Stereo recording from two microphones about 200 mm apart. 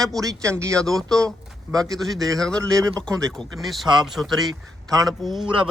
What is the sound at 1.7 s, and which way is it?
Speech, 20° right (ahead or behind).